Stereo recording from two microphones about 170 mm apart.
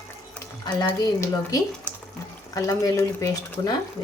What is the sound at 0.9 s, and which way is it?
Speech, 20° left (ahead or behind).